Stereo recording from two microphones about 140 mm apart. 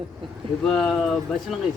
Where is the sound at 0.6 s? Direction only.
5° left (ahead or behind).